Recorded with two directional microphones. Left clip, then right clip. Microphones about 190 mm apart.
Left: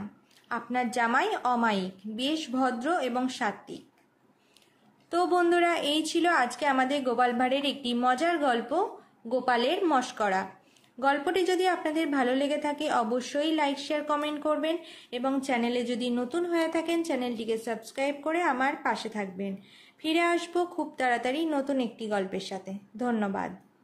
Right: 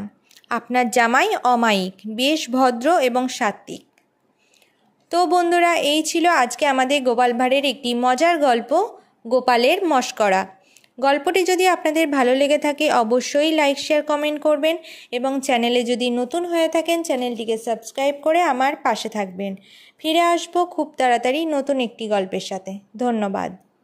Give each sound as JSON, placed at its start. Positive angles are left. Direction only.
{"t": 0.5, "sound": "a woman's voice", "side_deg": -45}
{"t": 5.1, "sound": "a woman's voice", "side_deg": -30}